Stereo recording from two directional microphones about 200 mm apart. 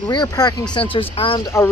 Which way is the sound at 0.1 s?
20° left (ahead or behind).